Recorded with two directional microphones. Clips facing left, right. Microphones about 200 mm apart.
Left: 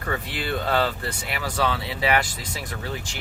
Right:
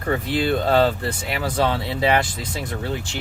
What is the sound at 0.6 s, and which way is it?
Speech, 35° right (ahead or behind).